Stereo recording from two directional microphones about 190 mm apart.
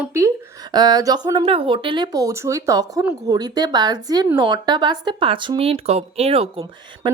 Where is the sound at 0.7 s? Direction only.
20° right (ahead or behind).